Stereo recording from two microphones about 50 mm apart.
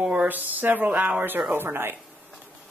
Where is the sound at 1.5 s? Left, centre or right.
Right.